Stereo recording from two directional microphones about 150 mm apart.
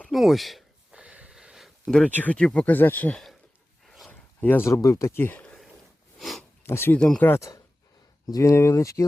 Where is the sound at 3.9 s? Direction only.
Centre (ahead or behind).